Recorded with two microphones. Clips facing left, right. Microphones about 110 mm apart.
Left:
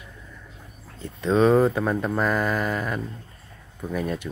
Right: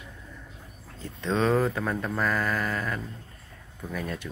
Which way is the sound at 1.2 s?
15° left (ahead or behind).